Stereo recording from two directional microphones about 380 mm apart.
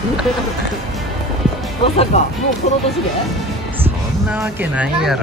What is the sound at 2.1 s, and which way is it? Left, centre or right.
Speech, centre.